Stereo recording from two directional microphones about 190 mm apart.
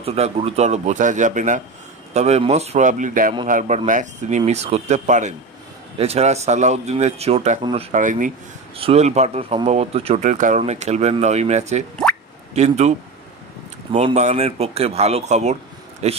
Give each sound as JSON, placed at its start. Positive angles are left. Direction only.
{"t": 0.0, "sound": "speech", "side_deg": -30}
{"t": 8.7, "sound": "speech", "side_deg": -30}
{"t": 13.9, "sound": "speech", "side_deg": -35}